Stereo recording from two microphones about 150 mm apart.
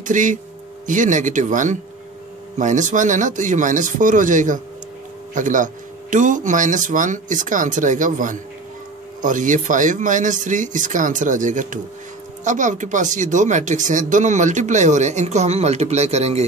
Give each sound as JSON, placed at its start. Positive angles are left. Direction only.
{"t": 0.0, "sound": "speech", "side_deg": -60}